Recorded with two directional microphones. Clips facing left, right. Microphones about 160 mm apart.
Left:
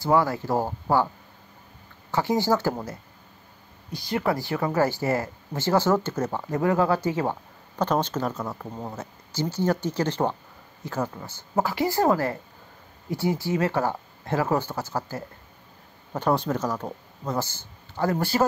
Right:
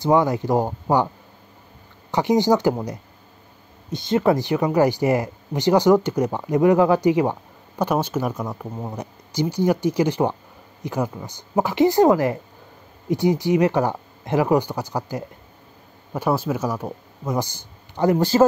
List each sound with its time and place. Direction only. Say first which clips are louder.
0.0 s speech: right 4 dB; 20° right (ahead or behind)
2.0 s speech: right 5 dB; 20° right (ahead or behind)